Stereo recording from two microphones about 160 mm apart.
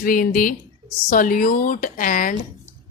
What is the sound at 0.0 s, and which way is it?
A woman's voice, 60° left (ahead or behind).